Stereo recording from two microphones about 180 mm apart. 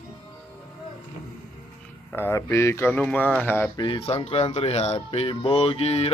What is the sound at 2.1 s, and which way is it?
Speech, 10° left (ahead or behind).